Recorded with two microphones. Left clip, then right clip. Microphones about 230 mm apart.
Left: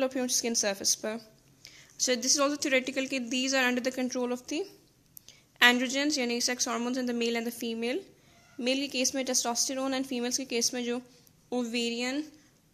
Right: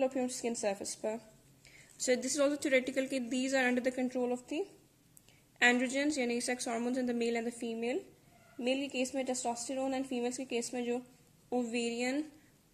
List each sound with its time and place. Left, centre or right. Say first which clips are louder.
0.0 s a woman's voice: left 4 dB; left